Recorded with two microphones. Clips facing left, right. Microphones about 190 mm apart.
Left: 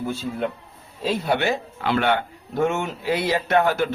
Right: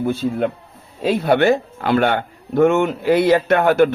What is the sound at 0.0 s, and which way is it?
Speech, 55° right (ahead or behind).